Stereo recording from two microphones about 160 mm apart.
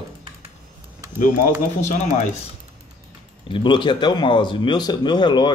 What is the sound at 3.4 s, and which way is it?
Speech, 30° left (ahead or behind).